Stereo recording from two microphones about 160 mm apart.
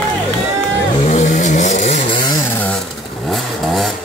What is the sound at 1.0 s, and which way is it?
Vehicle, 50° left (ahead or behind).